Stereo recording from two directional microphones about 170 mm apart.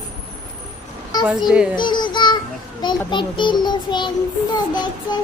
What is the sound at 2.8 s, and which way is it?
A child's voice, 25° left (ahead or behind).